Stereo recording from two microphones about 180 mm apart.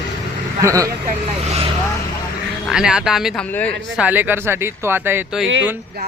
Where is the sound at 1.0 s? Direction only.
35° right (ahead or behind).